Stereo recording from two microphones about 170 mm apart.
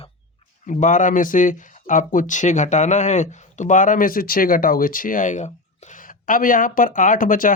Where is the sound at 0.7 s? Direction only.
50° left (ahead or behind).